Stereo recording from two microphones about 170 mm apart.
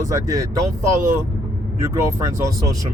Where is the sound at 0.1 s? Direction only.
20° right (ahead or behind).